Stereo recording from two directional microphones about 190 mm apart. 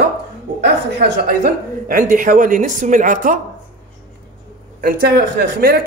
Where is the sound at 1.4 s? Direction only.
45° right (ahead or behind).